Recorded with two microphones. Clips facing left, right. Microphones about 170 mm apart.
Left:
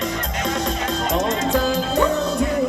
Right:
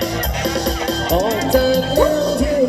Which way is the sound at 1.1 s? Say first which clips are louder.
Right 6 dB; 35° right (ahead or behind).